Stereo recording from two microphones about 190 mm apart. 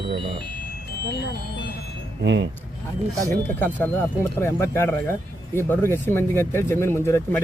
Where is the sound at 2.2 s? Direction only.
65° right (ahead or behind).